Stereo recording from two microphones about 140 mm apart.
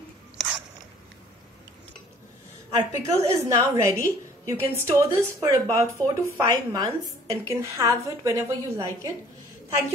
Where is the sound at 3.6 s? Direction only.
20° right (ahead or behind).